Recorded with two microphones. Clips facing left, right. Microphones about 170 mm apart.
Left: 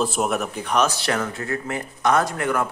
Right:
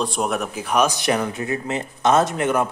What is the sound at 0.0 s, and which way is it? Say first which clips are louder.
A man's voice: even; 5° left (ahead or behind).